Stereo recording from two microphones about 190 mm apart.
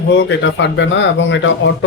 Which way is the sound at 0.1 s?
70° left (ahead or behind).